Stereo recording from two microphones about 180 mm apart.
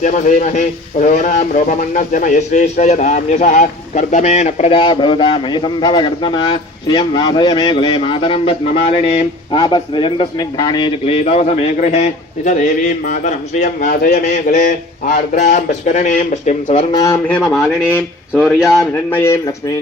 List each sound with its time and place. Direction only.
0.0 s speech: 45° left (ahead or behind)
13.1 s speech: 40° left (ahead or behind)
13.8 s speech: 55° left (ahead or behind); by 16.8 s 40° left (ahead or behind)
16.9 s speech: 20° left (ahead or behind)
17.2 s a man's voice: 5° left (ahead or behind)
19.1 s speech: 15° left (ahead or behind)